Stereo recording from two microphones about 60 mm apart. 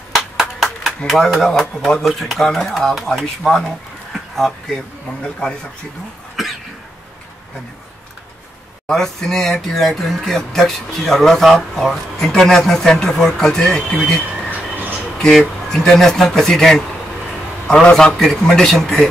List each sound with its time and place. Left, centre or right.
0.1 s speech: centre
8.8 s speech: centre
14.5 s a sound: right
15.1 s speech: centre
18.1 s a man's voice: centre